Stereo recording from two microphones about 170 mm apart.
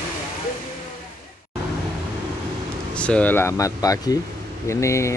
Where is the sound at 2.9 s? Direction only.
5° left (ahead or behind).